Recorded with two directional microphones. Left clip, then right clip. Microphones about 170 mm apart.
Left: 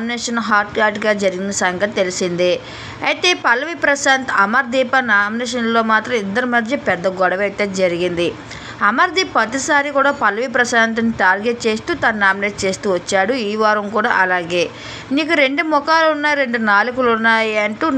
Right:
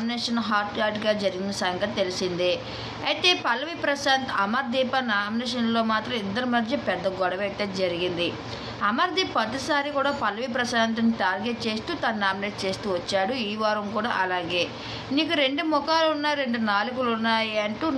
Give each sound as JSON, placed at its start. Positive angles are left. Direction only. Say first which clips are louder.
{"t": 0.3, "sound": "a woman's voice", "louder": "left 11 dB", "side_deg": 40}